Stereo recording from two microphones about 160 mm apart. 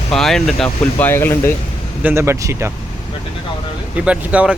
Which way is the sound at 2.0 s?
15° right (ahead or behind).